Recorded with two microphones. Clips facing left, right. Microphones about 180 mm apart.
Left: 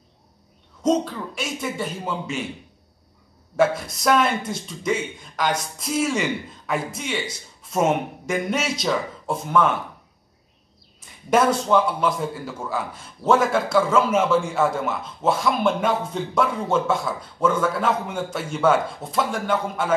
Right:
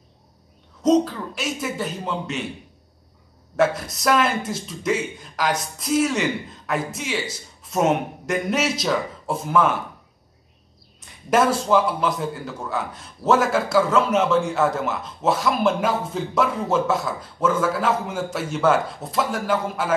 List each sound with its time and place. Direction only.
0.8 s a man's voice: centre (ahead or behind)
3.5 s a man's voice: centre (ahead or behind)
11.0 s a woman's voice: centre (ahead or behind)